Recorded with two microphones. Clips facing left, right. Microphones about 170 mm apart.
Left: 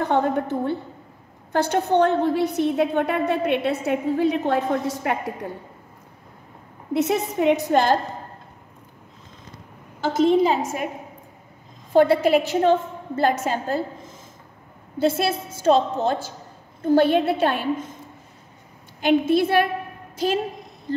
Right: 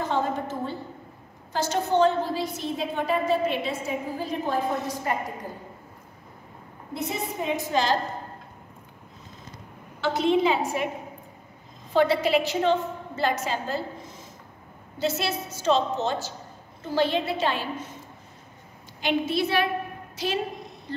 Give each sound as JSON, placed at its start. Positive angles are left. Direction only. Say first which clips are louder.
{"t": 0.0, "sound": "a sound", "louder": "left 5 dB", "side_deg": 60}
{"t": 1.5, "sound": "a woman's voice", "louder": "left 4 dB", "side_deg": 60}
{"t": 6.9, "sound": "a woman's voice", "louder": "left 9 dB", "side_deg": 75}
{"t": 9.9, "sound": "a woman's voice", "louder": "left 5 dB", "side_deg": 40}
{"t": 11.9, "sound": "a woman's voice", "louder": "left 5 dB", "side_deg": 50}
{"t": 15.0, "sound": "a woman's voice", "louder": "left 6 dB", "side_deg": 55}
{"t": 18.9, "sound": "a woman's voice", "louder": "left 7 dB", "side_deg": 50}